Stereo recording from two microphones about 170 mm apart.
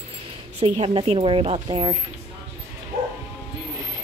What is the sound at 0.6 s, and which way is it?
A woman's voice, 40° right (ahead or behind).